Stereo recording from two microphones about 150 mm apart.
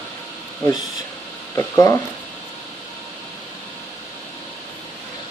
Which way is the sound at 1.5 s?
20° left (ahead or behind).